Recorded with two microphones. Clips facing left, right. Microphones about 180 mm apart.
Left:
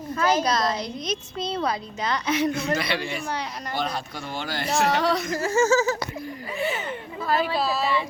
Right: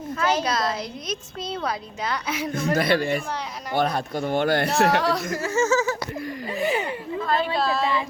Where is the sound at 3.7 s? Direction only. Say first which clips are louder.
Right 7 dB; 60° right (ahead or behind).